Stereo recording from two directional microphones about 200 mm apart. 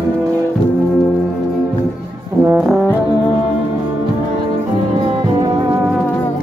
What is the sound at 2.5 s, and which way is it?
Brass instrument, 5° right (ahead or behind).